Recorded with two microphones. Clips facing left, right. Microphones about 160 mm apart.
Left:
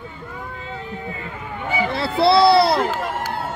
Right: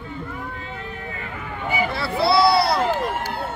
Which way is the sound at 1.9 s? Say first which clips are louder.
Left 5 dB; 25° left (ahead or behind).